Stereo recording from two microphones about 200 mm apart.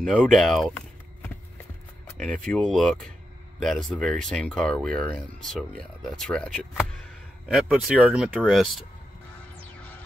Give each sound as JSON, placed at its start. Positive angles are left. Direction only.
{"t": 0.0, "sound": "speech", "side_deg": 5}